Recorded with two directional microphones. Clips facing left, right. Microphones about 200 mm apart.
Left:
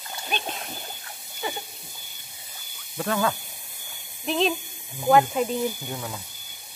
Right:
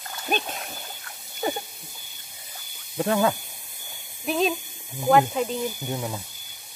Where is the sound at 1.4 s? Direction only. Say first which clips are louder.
Right 5 dB; 40° right (ahead or behind).